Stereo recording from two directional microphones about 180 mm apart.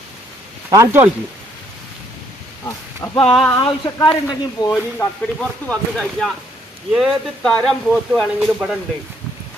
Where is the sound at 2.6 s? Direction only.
15° left (ahead or behind).